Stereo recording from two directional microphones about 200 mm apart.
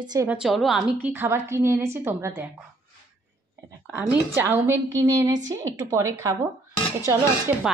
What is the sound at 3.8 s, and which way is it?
A woman's voice, 10° right (ahead or behind).